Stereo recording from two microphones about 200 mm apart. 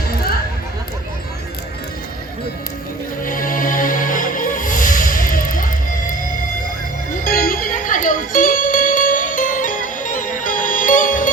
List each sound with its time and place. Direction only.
3.2 s music: 45° left (ahead or behind)
7.3 s music: 45° left (ahead or behind)